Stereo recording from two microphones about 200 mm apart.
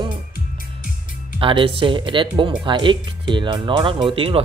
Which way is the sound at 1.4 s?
25° right (ahead or behind).